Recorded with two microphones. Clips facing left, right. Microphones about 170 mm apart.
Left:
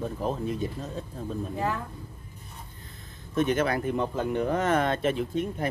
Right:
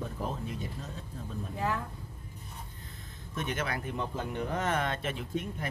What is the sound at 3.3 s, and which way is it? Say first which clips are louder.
Speech: left 10 dB; 35° left (ahead or behind).